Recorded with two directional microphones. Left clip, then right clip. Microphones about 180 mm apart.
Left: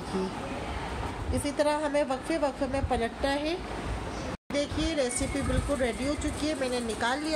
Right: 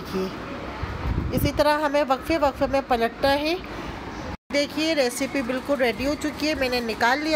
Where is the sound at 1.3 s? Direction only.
15° right (ahead or behind).